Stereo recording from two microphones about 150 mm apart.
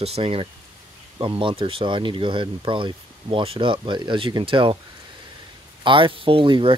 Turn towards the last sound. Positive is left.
turn(degrees=-35)  # may be behind; listen again after turning